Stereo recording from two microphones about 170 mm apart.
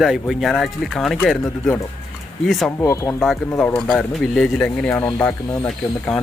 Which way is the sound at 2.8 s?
15° left (ahead or behind).